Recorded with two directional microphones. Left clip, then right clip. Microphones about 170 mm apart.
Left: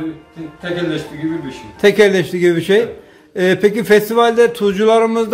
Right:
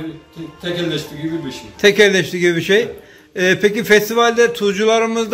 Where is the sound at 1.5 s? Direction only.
10° left (ahead or behind).